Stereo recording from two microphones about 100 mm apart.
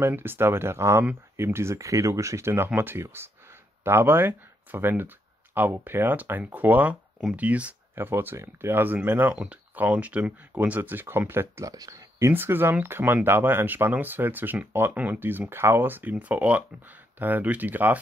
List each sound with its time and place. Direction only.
0.0 s speech: 20° right (ahead or behind)
11.7 s speech: 40° right (ahead or behind)
12.2 s speech: 25° right (ahead or behind)